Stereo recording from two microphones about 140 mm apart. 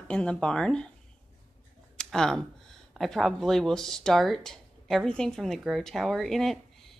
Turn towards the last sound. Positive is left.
turn(degrees=0)  # may be behind; listen again after turning